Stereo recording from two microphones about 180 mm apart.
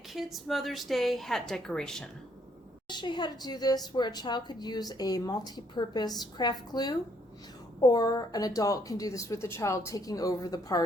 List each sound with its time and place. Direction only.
0.1 s a woman's voice: centre (ahead or behind)
2.9 s a woman's voice: 25° left (ahead or behind)